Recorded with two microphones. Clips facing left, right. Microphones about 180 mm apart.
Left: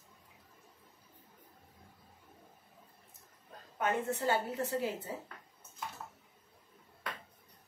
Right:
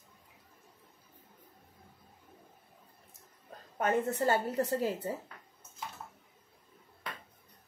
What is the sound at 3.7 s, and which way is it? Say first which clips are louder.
A woman's voice: right 3 dB; 45° right (ahead or behind).